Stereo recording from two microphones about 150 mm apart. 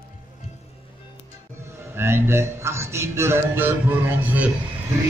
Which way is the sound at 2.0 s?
15° right (ahead or behind).